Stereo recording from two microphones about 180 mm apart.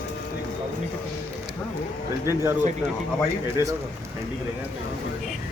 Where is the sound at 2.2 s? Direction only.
15° right (ahead or behind).